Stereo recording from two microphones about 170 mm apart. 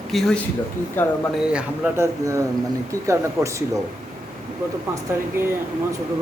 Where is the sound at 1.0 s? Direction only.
10° left (ahead or behind).